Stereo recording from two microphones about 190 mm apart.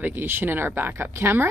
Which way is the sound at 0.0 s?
10° right (ahead or behind).